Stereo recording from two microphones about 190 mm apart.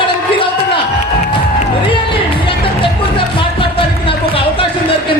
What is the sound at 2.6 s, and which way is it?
Music, 25° left (ahead or behind).